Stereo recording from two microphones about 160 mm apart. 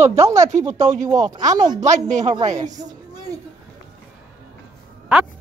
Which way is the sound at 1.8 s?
50° right (ahead or behind).